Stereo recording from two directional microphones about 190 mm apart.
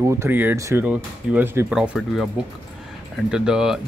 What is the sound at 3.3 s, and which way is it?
Speech, 5° right (ahead or behind).